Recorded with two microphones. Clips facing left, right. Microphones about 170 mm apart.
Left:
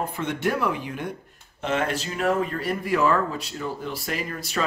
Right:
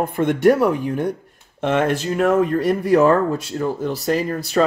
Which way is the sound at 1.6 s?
55° right (ahead or behind).